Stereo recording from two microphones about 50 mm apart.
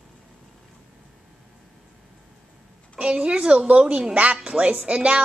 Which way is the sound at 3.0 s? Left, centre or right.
Centre.